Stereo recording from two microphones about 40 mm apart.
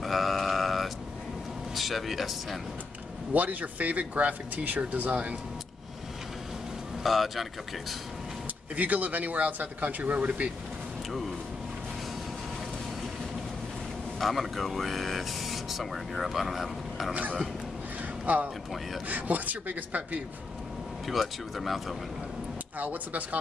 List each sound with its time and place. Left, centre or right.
0.0 s sheep: centre
1.8 s speech: centre
3.3 s speech: right
4.6 s speech: right
7.0 s speech: centre
8.7 s speech: right
10.1 s speech: right
14.2 s speech: centre
18.2 s speech: right
21.1 s speech: centre
22.8 s speech: right